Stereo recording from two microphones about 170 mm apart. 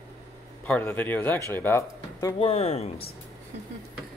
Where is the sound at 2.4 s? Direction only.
40° left (ahead or behind).